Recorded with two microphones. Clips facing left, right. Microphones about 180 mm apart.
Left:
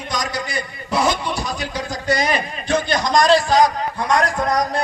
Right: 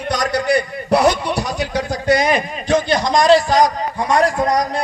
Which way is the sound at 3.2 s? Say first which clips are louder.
Right 4 dB; 20° right (ahead or behind).